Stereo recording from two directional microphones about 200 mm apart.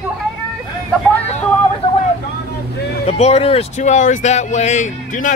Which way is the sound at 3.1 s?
30° left (ahead or behind).